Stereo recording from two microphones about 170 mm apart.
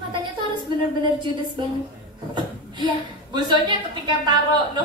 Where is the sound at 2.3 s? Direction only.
25° right (ahead or behind).